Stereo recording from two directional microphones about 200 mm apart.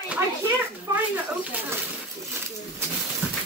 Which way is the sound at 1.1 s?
10° right (ahead or behind).